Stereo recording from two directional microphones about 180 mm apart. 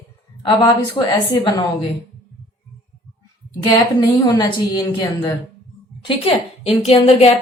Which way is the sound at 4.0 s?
20° left (ahead or behind).